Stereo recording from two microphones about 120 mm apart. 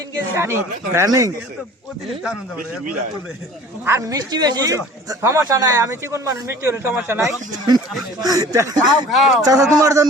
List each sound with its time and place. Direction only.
0.3 s speech: 20° right (ahead or behind)
3.8 s speech: 25° right (ahead or behind)
4.3 s speech: 35° right (ahead or behind); by 7.2 s 15° right (ahead or behind)
7.2 s speech: 25° right (ahead or behind)